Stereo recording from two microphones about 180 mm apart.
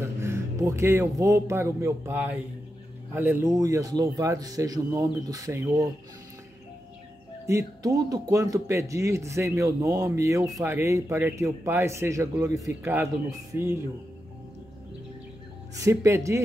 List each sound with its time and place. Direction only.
0.0 s speech: 15° right (ahead or behind)
7.4 s speech: 20° right (ahead or behind)
15.7 s speech: 15° right (ahead or behind)